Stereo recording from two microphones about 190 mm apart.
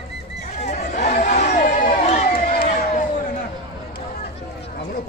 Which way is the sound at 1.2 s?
40° left (ahead or behind).